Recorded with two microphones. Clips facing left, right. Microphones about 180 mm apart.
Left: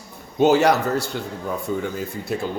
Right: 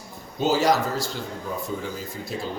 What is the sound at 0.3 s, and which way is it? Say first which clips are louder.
Speech: left 5 dB; 65° left (ahead or behind).